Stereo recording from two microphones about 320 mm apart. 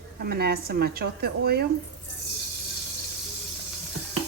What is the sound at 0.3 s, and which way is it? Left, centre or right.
A woman's voice, right.